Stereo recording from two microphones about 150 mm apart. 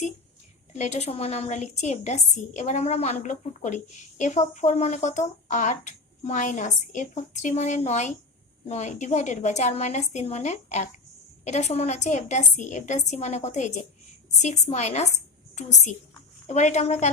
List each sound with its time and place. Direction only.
0.7 s speech: 50° left (ahead or behind)